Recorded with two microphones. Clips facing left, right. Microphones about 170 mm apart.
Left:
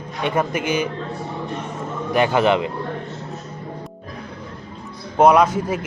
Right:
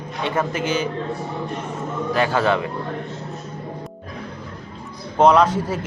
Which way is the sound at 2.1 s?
20° left (ahead or behind).